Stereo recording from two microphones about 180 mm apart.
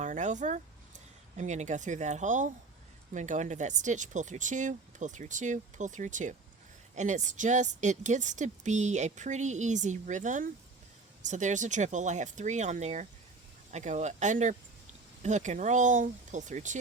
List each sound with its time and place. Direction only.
0.0 s a woman's voice: 45° right (ahead or behind)